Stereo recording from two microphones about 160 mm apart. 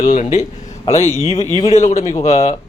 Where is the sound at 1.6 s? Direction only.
40° left (ahead or behind).